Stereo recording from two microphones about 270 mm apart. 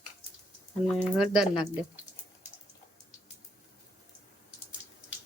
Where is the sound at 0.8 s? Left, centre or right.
Centre.